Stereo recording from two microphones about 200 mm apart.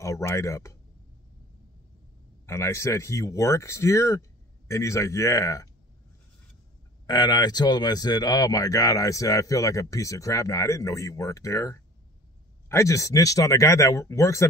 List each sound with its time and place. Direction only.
0.0 s speech: 15° left (ahead or behind)
2.4 s speech: 15° left (ahead or behind)
7.1 s speech: 20° left (ahead or behind)